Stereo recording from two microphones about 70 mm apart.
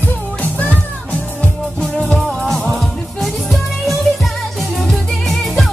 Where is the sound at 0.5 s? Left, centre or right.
Left.